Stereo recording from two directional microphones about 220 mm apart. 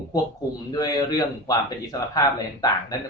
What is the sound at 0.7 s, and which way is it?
Speech, 15° left (ahead or behind).